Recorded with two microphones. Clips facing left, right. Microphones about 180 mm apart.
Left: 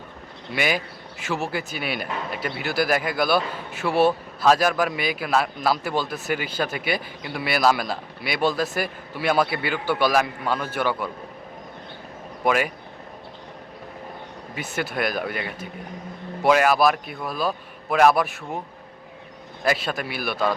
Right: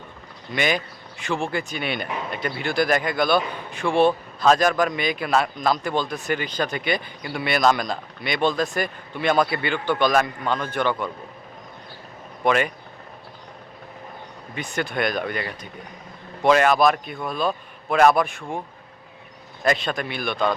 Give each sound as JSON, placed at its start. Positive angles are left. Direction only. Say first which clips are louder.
{"t": 0.5, "sound": "a man's voice", "louder": "right 1 dB", "side_deg": 5}
{"t": 12.5, "sound": "a man's voice", "louder": "right 1 dB", "side_deg": 5}
{"t": 14.5, "sound": "a man's voice", "louder": "right 1 dB", "side_deg": 5}
{"t": 19.6, "sound": "a man's voice", "louder": "right 1 dB", "side_deg": 5}